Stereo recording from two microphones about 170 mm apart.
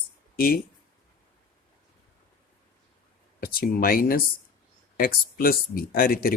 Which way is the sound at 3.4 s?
60° left (ahead or behind).